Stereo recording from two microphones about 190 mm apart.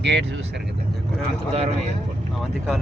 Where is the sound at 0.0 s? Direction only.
70° right (ahead or behind).